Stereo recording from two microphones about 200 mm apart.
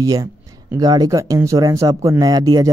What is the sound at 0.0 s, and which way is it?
Speech, 15° right (ahead or behind).